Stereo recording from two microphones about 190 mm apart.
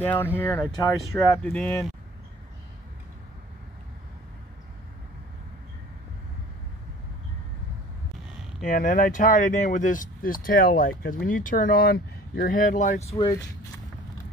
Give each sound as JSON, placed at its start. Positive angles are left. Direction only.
{"t": 0.0, "sound": "speech", "side_deg": 10}
{"t": 8.6, "sound": "speech", "side_deg": 45}